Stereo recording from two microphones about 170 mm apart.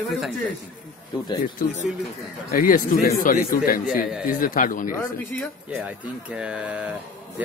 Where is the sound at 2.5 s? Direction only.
55° left (ahead or behind).